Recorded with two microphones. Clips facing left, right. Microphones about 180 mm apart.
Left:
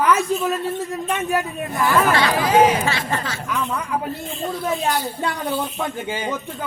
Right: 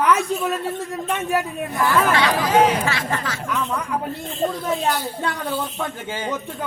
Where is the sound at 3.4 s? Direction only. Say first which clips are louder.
Right 1 dB; centre (ahead or behind).